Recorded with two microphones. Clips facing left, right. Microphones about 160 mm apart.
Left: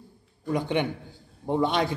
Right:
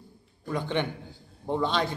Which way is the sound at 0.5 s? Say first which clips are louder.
Left 3 dB; 15° left (ahead or behind).